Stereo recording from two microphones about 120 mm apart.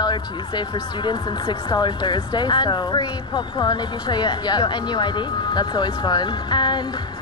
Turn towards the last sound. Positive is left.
turn(degrees=40)  # may be behind; listen again after turning